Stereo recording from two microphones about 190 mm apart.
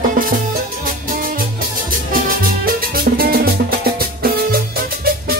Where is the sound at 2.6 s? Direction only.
50° right (ahead or behind).